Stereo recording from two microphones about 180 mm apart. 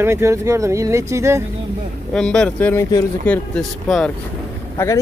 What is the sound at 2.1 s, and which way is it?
Speech, 5° left (ahead or behind).